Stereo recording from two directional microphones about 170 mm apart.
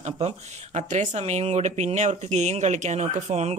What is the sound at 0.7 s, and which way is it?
Speech, 45° right (ahead or behind).